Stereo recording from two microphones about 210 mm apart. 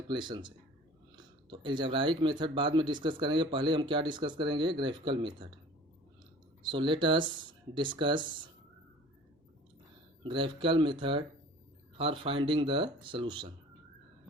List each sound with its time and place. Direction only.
0.1 s speech: 20° right (ahead or behind)
6.6 s speech: 20° right (ahead or behind)
10.2 s speech: 25° right (ahead or behind)